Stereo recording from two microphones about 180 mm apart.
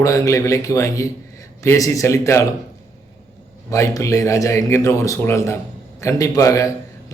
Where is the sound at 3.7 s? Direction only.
15° left (ahead or behind).